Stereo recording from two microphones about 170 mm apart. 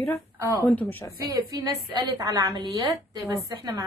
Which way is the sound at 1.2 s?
20° right (ahead or behind).